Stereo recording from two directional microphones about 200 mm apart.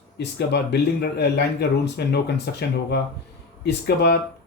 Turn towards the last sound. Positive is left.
turn(degrees=55)  # may be behind; listen again after turning